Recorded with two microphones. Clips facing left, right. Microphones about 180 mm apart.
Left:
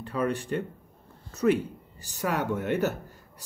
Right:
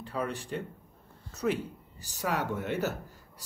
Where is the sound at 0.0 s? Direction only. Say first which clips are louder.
Left 6 dB; 60° left (ahead or behind).